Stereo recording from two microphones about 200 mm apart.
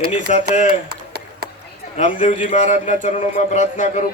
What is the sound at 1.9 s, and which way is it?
A man's voice, 40° left (ahead or behind).